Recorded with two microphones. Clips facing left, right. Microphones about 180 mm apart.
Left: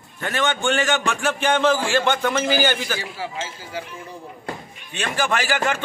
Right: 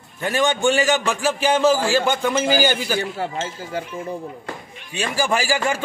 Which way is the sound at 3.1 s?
50° right (ahead or behind).